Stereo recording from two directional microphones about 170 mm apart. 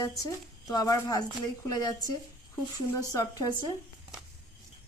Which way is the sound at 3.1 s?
20° left (ahead or behind).